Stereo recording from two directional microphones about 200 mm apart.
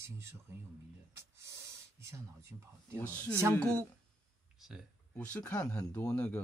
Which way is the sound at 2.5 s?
15° right (ahead or behind).